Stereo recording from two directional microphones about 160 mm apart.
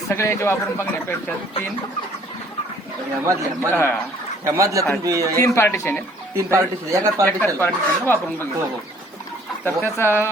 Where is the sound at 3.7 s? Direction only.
15° left (ahead or behind).